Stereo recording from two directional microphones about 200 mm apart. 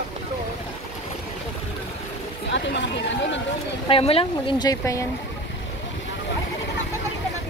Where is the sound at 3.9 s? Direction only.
30° left (ahead or behind).